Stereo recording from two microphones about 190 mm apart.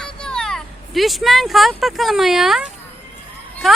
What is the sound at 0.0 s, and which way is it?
Speech, 5° left (ahead or behind).